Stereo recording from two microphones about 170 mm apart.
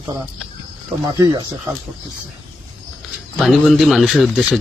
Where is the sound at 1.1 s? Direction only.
20° right (ahead or behind).